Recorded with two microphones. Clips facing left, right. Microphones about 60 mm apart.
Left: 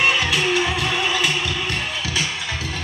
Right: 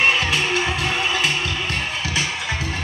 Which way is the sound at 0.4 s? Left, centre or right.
Right.